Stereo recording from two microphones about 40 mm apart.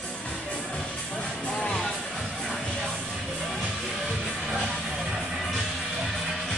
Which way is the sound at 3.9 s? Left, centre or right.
Centre.